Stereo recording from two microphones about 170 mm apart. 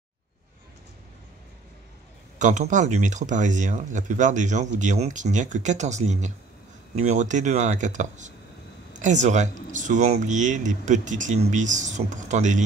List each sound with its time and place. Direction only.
2.3 s speech: 45° right (ahead or behind)